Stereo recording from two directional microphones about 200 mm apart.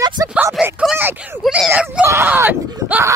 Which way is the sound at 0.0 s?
20° right (ahead or behind).